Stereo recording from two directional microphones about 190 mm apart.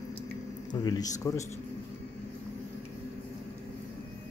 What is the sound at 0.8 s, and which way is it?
Speech, 20° left (ahead or behind).